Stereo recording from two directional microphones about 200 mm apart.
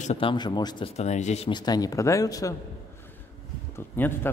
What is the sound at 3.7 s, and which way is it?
Speech, 10° left (ahead or behind).